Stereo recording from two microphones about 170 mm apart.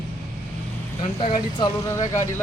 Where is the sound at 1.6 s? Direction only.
20° left (ahead or behind).